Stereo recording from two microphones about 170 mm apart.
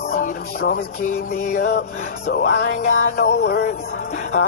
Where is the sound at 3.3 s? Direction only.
40° left (ahead or behind).